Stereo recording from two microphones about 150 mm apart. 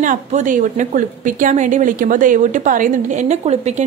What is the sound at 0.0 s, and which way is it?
A woman's voice, 55° right (ahead or behind).